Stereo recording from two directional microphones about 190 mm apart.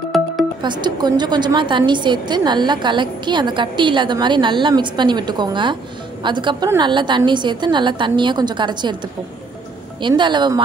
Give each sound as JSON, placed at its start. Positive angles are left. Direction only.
{"t": 0.6, "sound": "a woman's voice", "side_deg": -25}
{"t": 10.0, "sound": "a woman's voice", "side_deg": -25}